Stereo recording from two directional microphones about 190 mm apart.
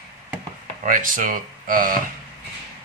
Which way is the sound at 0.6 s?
40° right (ahead or behind).